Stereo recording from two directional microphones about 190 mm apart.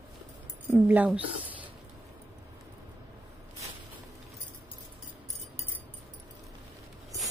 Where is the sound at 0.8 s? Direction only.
10° right (ahead or behind).